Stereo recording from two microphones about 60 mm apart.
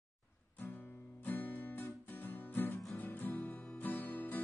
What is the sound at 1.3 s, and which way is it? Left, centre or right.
Music, left.